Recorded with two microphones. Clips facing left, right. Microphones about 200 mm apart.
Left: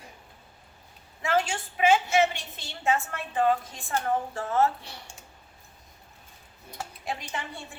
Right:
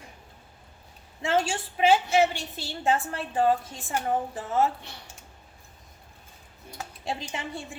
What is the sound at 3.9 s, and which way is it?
Speech, 15° right (ahead or behind).